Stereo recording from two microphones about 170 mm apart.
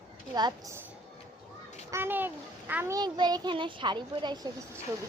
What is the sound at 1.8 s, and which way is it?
A child's voice, 15° right (ahead or behind).